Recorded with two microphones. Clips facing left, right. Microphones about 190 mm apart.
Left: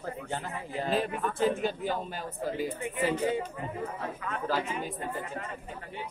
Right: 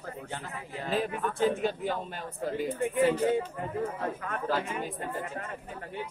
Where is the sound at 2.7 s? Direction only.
55° right (ahead or behind).